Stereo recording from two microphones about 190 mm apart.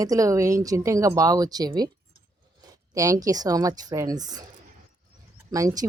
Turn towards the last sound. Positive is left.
turn(degrees=-15)  # may be behind; listen again after turning